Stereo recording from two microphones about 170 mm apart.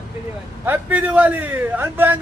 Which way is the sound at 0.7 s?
10° right (ahead or behind).